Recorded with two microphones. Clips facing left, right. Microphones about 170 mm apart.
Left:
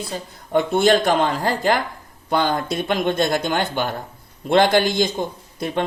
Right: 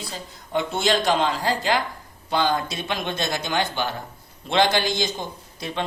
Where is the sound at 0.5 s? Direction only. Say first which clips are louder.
Left 6 dB; 50° left (ahead or behind).